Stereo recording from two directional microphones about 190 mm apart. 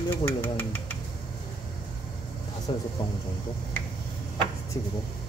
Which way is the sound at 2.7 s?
25° left (ahead or behind).